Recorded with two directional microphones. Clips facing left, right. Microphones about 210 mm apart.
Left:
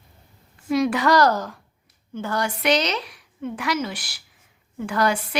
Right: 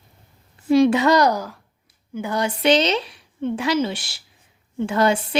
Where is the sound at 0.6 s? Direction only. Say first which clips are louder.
Right 5 dB; 30° right (ahead or behind).